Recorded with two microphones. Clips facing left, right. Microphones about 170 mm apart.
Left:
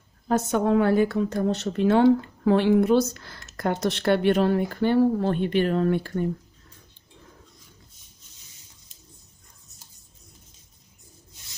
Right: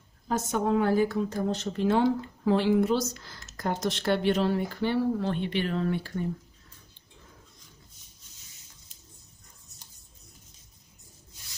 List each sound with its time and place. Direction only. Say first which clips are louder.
0.3 s a woman's voice: left 5 dB; 65° left (ahead or behind); by 6.2 s 50° left (ahead or behind)